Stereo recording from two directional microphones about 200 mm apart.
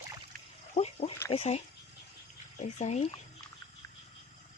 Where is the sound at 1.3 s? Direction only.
30° left (ahead or behind).